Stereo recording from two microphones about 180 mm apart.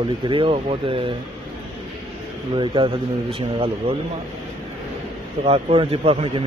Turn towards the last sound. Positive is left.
turn(degrees=-30)  # may be behind; listen again after turning